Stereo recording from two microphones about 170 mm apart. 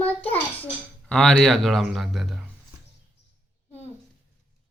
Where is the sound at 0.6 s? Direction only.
5° left (ahead or behind).